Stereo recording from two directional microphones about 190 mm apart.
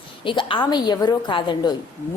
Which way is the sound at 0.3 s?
25° left (ahead or behind).